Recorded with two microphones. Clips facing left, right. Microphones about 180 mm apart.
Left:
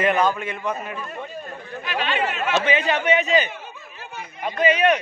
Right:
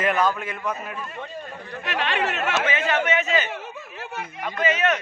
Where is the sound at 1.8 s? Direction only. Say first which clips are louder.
Left 1 dB; 75° right (ahead or behind).